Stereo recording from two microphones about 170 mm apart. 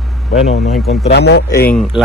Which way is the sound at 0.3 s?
40° left (ahead or behind).